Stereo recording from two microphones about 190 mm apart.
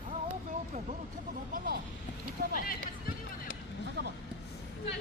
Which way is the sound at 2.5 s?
45° left (ahead or behind).